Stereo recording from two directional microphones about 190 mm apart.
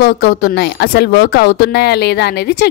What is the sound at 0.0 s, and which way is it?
A woman's voice, 55° left (ahead or behind).